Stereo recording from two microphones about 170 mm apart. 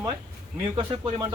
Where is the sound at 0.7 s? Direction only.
25° right (ahead or behind).